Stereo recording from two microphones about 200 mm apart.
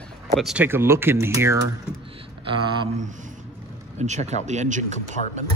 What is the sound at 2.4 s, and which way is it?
Speech, 30° right (ahead or behind).